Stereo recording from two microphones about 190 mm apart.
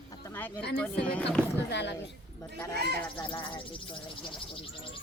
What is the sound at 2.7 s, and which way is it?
Speech, 60° right (ahead or behind).